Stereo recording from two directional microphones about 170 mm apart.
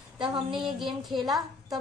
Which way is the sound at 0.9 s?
Centre (ahead or behind).